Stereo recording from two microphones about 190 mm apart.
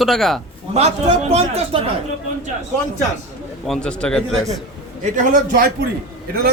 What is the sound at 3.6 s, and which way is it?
Speech, 5° left (ahead or behind).